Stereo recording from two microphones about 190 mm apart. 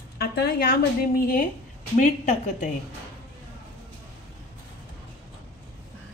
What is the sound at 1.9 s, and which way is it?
Speech, 40° left (ahead or behind).